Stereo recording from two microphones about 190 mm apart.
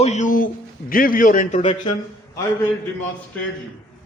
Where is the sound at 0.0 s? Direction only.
40° left (ahead or behind).